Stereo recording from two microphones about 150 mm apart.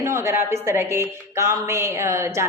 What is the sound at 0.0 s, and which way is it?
A woman's voice, 20° right (ahead or behind).